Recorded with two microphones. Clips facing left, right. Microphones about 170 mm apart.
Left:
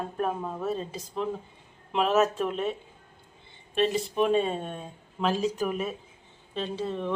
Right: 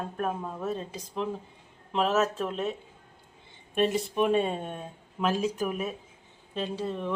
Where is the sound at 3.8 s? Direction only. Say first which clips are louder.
Even; 5° right (ahead or behind).